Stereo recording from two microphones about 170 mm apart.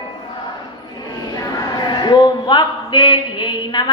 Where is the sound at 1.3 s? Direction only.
25° left (ahead or behind).